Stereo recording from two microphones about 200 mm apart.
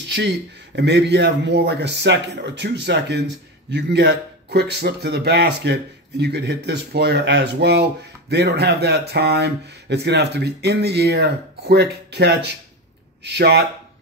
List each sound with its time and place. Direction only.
0.7 s speech: 60° right (ahead or behind)